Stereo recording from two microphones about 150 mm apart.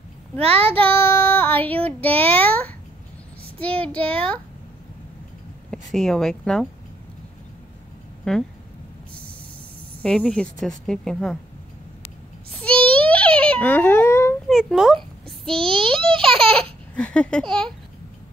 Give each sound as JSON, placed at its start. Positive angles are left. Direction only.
{"t": 0.4, "sound": "a child's voice", "side_deg": -40}
{"t": 0.8, "sound": "child singing", "side_deg": 15}
{"t": 1.9, "sound": "a child's voice", "side_deg": 10}
{"t": 5.7, "sound": "speech", "side_deg": 0}
{"t": 8.3, "sound": "speech", "side_deg": 5}
{"t": 10.0, "sound": "speech", "side_deg": 5}
{"t": 12.9, "sound": "a sound", "side_deg": 10}
{"t": 14.5, "sound": "speech", "side_deg": -5}
{"t": 15.4, "sound": "a child's voice", "side_deg": -35}
{"t": 16.9, "sound": "a child's voice", "side_deg": 10}